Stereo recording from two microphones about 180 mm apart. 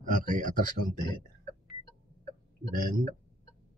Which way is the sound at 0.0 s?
50° right (ahead or behind).